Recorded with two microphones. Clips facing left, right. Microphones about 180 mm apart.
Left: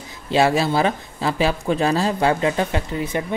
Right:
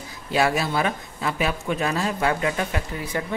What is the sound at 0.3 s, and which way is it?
A woman's voice, 25° left (ahead or behind).